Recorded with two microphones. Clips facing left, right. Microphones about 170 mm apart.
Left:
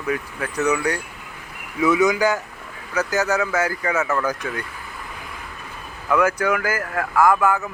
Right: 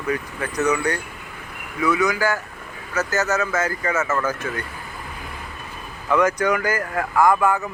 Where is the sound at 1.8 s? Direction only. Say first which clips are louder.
Left 3 dB; 20° left (ahead or behind).